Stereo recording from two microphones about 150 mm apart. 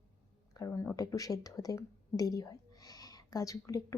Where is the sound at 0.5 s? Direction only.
20° left (ahead or behind).